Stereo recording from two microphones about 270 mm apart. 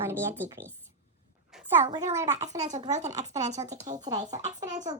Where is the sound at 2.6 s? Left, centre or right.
Right.